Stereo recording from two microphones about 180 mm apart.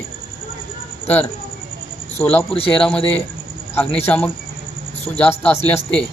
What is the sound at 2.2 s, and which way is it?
Speech, 5° left (ahead or behind).